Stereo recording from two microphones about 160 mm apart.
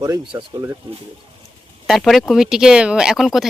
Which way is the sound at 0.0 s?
25° right (ahead or behind).